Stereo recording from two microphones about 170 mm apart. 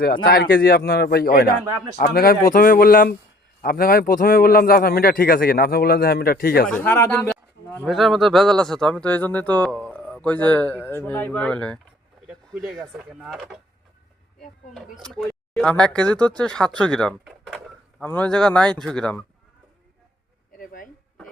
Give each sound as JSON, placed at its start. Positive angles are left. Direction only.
{"t": 0.0, "sound": "speech", "side_deg": 60}
{"t": 6.7, "sound": "speech", "side_deg": 10}
{"t": 7.9, "sound": "speech", "side_deg": 0}
{"t": 12.9, "sound": "speech", "side_deg": 0}
{"t": 15.1, "sound": "speech", "side_deg": 5}